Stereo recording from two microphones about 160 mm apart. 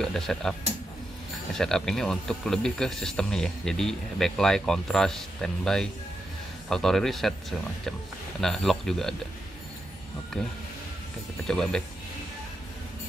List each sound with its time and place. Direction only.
0.0 s speech: 5° left (ahead or behind)
1.6 s speech: 5° left (ahead or behind)
8.4 s speech: centre (ahead or behind)
11.4 s speech: 5° left (ahead or behind)